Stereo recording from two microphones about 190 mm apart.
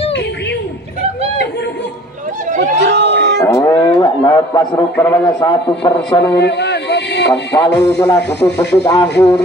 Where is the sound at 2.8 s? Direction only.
65° right (ahead or behind).